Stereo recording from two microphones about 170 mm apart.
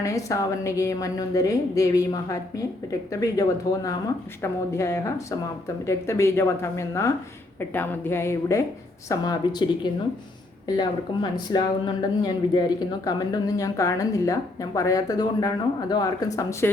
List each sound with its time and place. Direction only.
0.0 s speech: 20° left (ahead or behind)
4.4 s a woman's voice: 15° left (ahead or behind)